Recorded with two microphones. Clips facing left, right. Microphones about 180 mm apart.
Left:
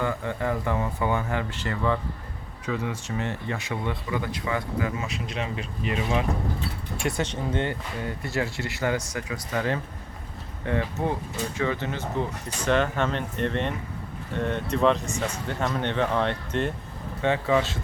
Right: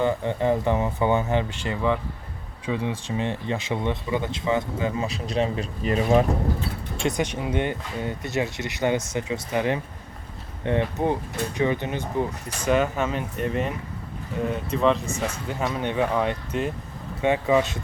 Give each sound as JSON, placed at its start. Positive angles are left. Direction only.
{"t": 0.0, "sound": "speech", "side_deg": -20}
{"t": 6.9, "sound": "speech", "side_deg": -20}
{"t": 17.2, "sound": "speech", "side_deg": -15}